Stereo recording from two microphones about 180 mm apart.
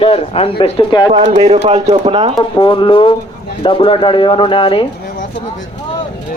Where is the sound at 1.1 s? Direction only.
25° right (ahead or behind).